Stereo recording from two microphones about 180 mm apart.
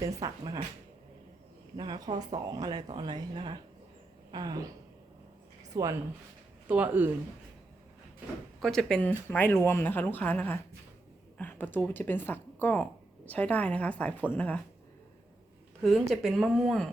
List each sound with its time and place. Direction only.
0.0 s speech: 20° right (ahead or behind)
1.7 s speech: 25° right (ahead or behind)
5.7 s speech: 15° right (ahead or behind)
8.6 s speech: 5° left (ahead or behind)
16.2 s speech: centre (ahead or behind)